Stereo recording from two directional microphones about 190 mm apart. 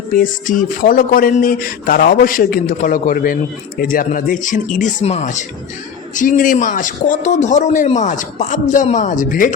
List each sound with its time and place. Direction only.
0.1 s speech: 45° left (ahead or behind)